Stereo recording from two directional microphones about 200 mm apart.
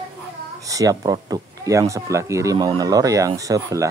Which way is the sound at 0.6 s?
15° right (ahead or behind).